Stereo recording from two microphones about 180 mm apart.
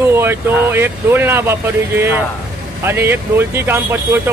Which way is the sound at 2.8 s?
10° right (ahead or behind).